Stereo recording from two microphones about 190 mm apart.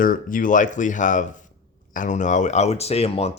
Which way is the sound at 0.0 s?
45° left (ahead or behind).